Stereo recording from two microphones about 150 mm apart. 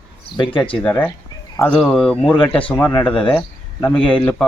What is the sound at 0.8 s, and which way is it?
A man's voice, 10° left (ahead or behind).